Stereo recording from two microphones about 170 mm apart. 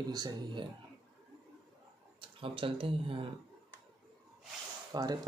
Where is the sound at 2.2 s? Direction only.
30° right (ahead or behind).